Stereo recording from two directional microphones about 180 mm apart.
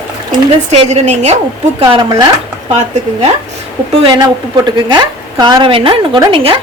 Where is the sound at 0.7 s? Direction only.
35° right (ahead or behind).